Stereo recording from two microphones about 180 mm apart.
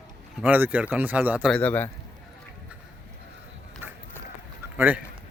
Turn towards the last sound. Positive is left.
turn(degrees=-10)  # may be behind; listen again after turning